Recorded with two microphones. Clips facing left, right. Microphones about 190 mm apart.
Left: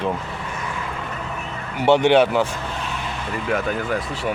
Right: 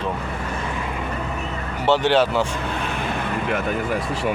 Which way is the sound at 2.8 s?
55° right (ahead or behind).